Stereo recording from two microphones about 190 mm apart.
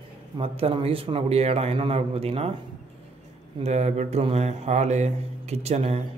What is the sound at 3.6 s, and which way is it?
A man's voice, 35° right (ahead or behind).